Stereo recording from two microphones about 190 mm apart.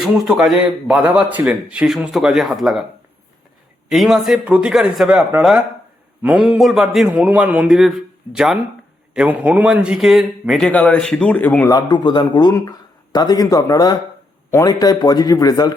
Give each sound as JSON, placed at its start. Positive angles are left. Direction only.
{"t": 0.0, "sound": "a man's voice", "side_deg": 0}
{"t": 3.8, "sound": "a man's voice", "side_deg": 0}
{"t": 11.9, "sound": "speech", "side_deg": 25}